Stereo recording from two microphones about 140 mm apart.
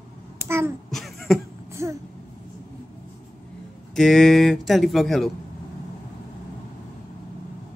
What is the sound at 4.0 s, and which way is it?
Speech, centre (ahead or behind).